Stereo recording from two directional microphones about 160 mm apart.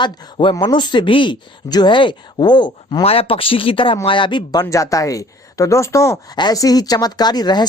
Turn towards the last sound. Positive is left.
turn(degrees=25)  # may be behind; listen again after turning